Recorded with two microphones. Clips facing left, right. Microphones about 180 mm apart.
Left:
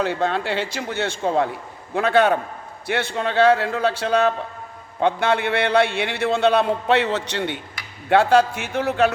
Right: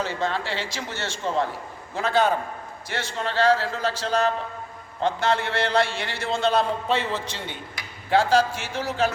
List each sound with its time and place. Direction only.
0.0 s a man's voice: 60° left (ahead or behind)